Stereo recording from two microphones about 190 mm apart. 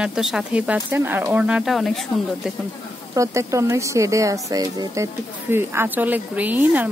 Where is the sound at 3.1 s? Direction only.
15° right (ahead or behind).